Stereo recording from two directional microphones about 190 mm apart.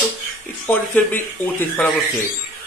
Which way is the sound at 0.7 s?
10° left (ahead or behind).